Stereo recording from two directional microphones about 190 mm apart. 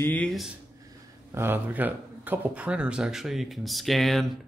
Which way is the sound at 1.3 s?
10° right (ahead or behind).